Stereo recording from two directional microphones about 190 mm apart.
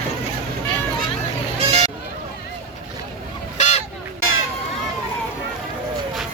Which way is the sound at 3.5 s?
35° left (ahead or behind).